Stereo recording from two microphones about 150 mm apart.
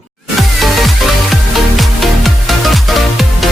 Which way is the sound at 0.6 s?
Centre (ahead or behind).